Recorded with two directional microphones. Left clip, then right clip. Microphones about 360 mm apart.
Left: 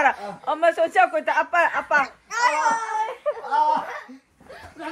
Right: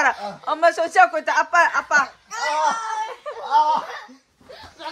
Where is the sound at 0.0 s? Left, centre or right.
Centre.